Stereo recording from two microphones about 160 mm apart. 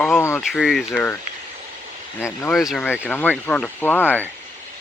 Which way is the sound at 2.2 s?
15° left (ahead or behind).